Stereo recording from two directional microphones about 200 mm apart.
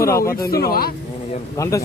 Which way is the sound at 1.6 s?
15° left (ahead or behind).